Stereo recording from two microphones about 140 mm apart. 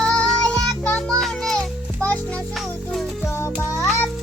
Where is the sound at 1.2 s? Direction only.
Centre (ahead or behind).